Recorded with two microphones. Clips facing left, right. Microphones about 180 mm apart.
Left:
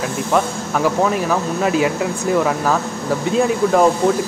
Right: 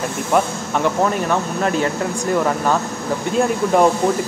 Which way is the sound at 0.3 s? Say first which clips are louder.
Right 1 dB; centre (ahead or behind).